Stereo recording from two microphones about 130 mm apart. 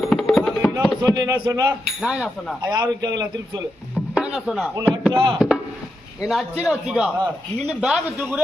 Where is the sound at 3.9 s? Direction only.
10° right (ahead or behind).